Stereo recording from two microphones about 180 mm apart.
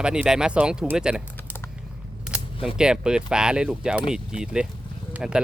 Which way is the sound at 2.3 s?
5° right (ahead or behind).